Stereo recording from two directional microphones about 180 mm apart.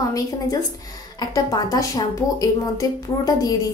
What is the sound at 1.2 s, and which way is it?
A woman's voice, 20° left (ahead or behind).